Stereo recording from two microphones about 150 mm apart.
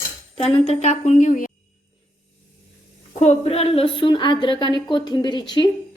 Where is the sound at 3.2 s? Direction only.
45° left (ahead or behind).